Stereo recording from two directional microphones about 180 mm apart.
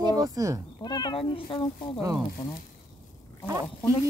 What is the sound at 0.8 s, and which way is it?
Speech, 25° left (ahead or behind).